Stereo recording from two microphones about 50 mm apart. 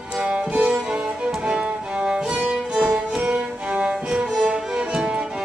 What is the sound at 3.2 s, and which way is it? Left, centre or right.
Music, right.